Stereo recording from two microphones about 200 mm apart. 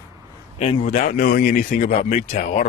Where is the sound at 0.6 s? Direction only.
35° left (ahead or behind).